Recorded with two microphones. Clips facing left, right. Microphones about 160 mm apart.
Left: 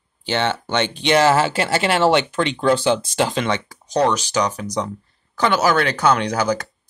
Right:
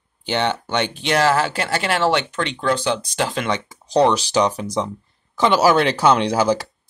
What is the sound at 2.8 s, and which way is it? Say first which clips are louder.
Speech: left 3 dB; 30° left (ahead or behind).